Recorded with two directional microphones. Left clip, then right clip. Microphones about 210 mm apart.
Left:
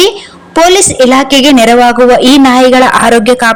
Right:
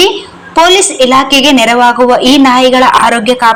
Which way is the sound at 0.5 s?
50° left (ahead or behind).